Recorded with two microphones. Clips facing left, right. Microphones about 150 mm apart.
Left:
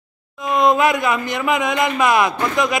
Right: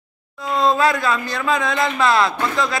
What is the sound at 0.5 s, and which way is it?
Speech, 15° left (ahead or behind).